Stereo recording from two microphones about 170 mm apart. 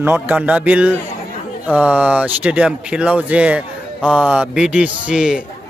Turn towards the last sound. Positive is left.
turn(degrees=-5)  # may be behind; listen again after turning